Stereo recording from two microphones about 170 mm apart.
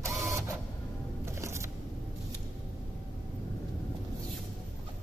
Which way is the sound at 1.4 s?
15° right (ahead or behind).